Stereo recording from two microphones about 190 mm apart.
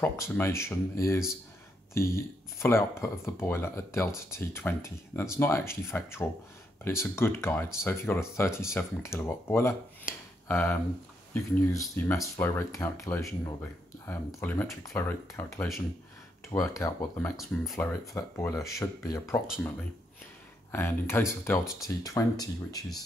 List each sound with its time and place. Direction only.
0.0 s speech: 15° left (ahead or behind)
20.7 s speech: 10° left (ahead or behind)